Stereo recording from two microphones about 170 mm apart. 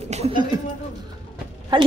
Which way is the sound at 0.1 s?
40° right (ahead or behind).